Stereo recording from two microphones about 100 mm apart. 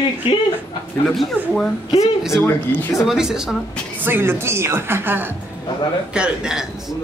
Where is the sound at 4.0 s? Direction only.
20° right (ahead or behind).